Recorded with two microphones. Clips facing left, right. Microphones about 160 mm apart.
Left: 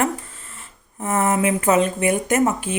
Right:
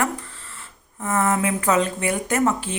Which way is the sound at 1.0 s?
20° left (ahead or behind).